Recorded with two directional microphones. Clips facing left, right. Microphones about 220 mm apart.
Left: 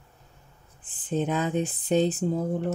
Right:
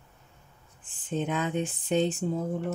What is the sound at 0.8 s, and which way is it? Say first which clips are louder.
Speech: left 3 dB; 35° left (ahead or behind).